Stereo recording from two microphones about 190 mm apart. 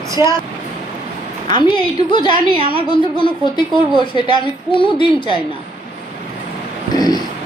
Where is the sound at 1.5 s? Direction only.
25° left (ahead or behind).